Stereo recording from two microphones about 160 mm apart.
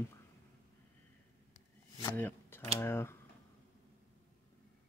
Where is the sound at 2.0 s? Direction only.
15° left (ahead or behind).